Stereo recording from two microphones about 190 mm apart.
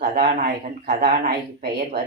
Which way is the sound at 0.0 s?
50° right (ahead or behind).